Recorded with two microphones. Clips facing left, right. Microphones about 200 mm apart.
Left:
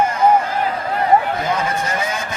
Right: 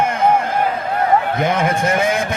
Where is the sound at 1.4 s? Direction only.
90° right.